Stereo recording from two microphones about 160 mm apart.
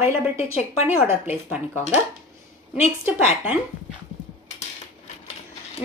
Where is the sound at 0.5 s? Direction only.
40° left (ahead or behind).